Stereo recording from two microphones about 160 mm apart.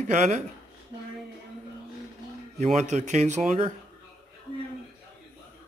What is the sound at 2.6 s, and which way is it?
Speech, 45° right (ahead or behind).